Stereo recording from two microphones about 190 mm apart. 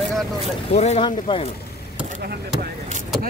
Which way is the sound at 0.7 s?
35° left (ahead or behind).